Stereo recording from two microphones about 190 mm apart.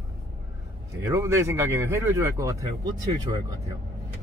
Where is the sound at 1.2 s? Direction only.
15° right (ahead or behind).